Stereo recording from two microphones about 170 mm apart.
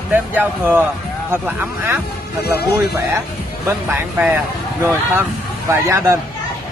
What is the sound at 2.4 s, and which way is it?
Speech, 70° left (ahead or behind).